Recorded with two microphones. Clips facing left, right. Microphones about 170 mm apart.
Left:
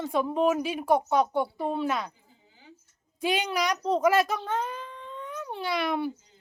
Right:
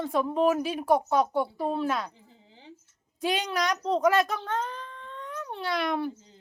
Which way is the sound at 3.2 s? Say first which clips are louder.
Left 1 dB; 5° left (ahead or behind).